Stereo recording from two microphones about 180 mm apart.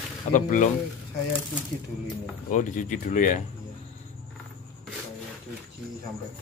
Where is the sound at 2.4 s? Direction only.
45° left (ahead or behind).